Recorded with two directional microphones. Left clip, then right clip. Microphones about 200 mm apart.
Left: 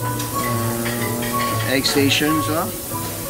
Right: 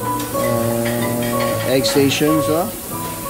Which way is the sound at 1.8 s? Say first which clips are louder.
Right 1 dB; 35° right (ahead or behind).